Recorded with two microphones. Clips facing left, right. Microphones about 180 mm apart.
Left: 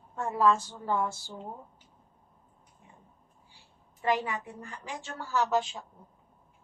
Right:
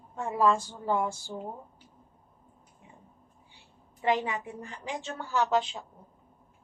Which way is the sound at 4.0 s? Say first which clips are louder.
Right 1 dB; 20° right (ahead or behind).